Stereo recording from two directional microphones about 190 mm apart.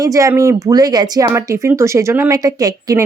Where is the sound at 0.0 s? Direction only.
15° right (ahead or behind).